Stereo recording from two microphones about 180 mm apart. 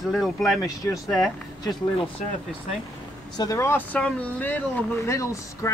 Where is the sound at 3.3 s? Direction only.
20° left (ahead or behind).